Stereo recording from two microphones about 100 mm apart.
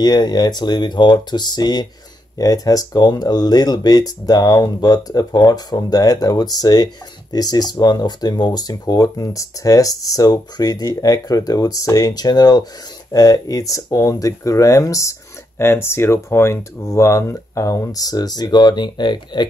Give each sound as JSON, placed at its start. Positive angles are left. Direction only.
{"t": 0.0, "sound": "speech", "side_deg": 45}